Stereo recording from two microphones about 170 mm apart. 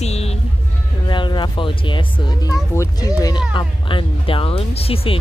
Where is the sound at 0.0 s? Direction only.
40° left (ahead or behind).